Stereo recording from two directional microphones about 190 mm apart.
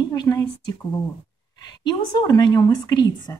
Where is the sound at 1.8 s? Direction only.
25° left (ahead or behind).